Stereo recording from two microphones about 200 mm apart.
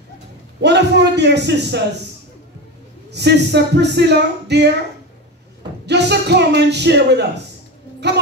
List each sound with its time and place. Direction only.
0.6 s speech: 60° right (ahead or behind)
3.1 s speech: 60° right (ahead or behind)
5.9 s speech: 55° right (ahead or behind)
8.0 s child singing: 60° right (ahead or behind)